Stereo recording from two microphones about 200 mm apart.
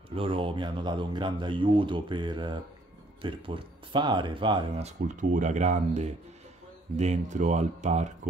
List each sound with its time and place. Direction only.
0.1 s speech: 25° right (ahead or behind)